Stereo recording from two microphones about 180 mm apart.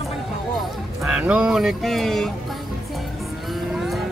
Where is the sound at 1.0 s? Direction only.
5° right (ahead or behind).